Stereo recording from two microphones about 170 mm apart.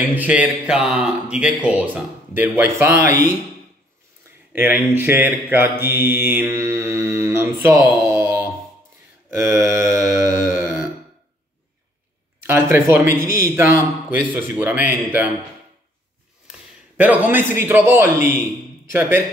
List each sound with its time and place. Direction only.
0.1 s mantra: 10° right (ahead or behind)
4.5 s mantra: 10° right (ahead or behind)
12.7 s mantra: 15° right (ahead or behind)
16.9 s mantra: 10° right (ahead or behind)